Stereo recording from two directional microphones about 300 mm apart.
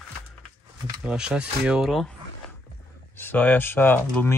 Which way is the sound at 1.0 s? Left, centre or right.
Centre.